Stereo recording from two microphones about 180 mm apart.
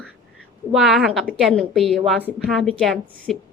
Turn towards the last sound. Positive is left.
turn(degrees=0)  # may be behind; listen again after turning